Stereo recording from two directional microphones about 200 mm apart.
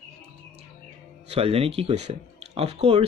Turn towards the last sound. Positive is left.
turn(degrees=-30)  # may be behind; listen again after turning